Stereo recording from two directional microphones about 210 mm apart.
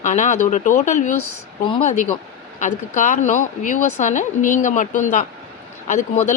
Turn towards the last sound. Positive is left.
turn(degrees=35)  # may be behind; listen again after turning